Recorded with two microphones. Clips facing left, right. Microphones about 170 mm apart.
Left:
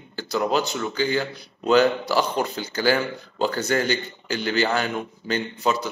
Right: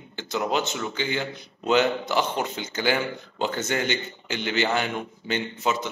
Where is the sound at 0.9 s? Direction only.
40° left (ahead or behind).